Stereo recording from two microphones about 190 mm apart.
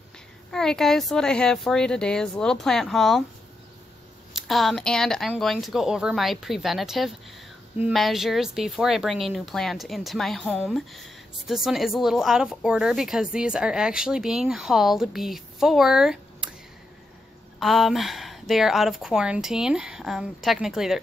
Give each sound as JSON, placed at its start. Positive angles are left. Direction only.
{"t": 0.5, "sound": "a woman's voice", "side_deg": 5}
{"t": 4.3, "sound": "a woman's voice", "side_deg": 0}
{"t": 17.6, "sound": "a woman's voice", "side_deg": 0}